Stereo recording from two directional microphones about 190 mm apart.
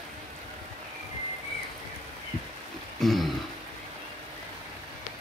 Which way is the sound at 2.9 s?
Centre (ahead or behind).